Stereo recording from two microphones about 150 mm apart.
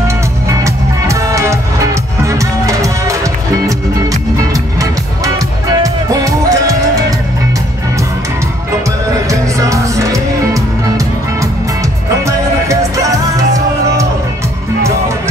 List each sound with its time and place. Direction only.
1.0 s music: 20° right (ahead or behind)
4.4 s music: 25° right (ahead or behind)
9.3 s music: 20° right (ahead or behind)
12.6 s music: 20° right (ahead or behind)